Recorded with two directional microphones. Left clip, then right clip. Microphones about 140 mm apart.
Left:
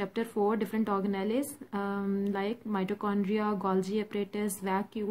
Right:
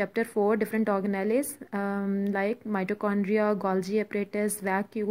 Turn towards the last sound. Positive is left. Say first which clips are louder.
# right 4 dB
turn(degrees=-40)  # may be behind; listen again after turning